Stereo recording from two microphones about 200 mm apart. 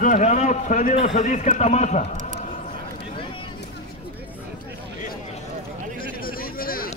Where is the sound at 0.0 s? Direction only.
40° left (ahead or behind).